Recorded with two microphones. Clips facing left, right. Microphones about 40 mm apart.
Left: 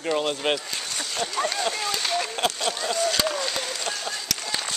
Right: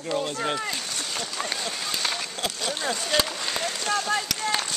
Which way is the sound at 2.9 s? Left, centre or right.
Centre.